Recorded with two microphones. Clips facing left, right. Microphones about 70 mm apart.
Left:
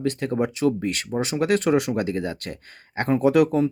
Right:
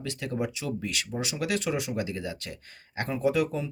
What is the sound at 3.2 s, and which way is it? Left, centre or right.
Speech, left.